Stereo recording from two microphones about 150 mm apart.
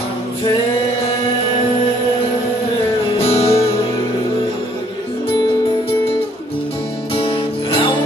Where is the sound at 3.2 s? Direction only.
40° left (ahead or behind).